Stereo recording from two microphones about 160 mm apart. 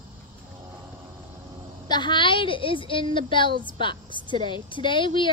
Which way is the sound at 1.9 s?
30° left (ahead or behind).